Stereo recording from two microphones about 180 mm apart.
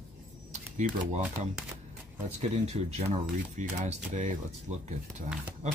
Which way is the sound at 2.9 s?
40° right (ahead or behind).